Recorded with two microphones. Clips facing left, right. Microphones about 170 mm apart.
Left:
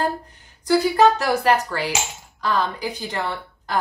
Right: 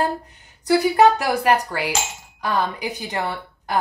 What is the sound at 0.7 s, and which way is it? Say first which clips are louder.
A woman's voice: right 1 dB; 15° right (ahead or behind).